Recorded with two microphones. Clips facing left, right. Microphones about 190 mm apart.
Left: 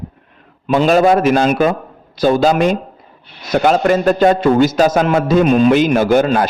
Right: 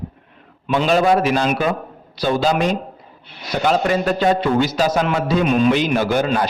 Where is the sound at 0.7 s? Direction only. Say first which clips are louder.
Left 4 dB; 45° left (ahead or behind).